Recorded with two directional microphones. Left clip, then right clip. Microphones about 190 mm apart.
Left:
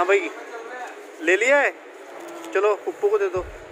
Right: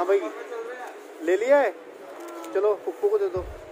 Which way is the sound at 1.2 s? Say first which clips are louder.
Left 2 dB; centre (ahead or behind).